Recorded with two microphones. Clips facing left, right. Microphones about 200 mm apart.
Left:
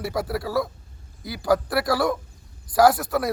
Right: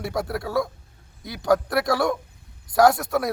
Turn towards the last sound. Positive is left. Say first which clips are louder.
# even
turn(degrees=0)  # may be behind; listen again after turning